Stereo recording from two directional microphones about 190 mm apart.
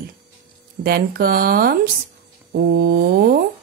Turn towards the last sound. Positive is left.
turn(degrees=-50)  # may be behind; listen again after turning